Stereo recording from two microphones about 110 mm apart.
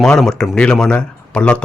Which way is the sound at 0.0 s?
5° left (ahead or behind).